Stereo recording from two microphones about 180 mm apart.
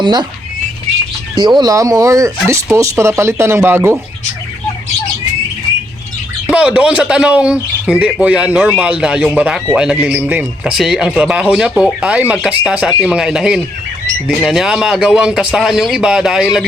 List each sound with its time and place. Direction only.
0.0 s speech: 25° right (ahead or behind)
1.4 s speech: 25° right (ahead or behind)
6.5 s speech: 5° right (ahead or behind)